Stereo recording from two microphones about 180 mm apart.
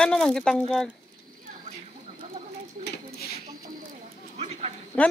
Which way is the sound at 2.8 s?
60° left (ahead or behind).